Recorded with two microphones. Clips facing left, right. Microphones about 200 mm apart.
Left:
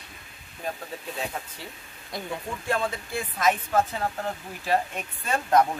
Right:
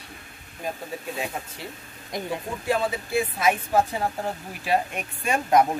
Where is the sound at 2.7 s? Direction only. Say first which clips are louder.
Right 4 dB; 5° right (ahead or behind).